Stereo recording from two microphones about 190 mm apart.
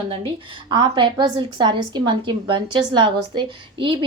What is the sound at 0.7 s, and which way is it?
A woman's voice, 25° right (ahead or behind).